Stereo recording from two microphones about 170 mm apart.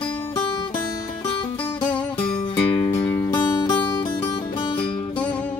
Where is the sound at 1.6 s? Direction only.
10° left (ahead or behind).